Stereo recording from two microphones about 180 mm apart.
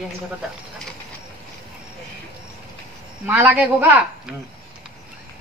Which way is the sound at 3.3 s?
10° right (ahead or behind).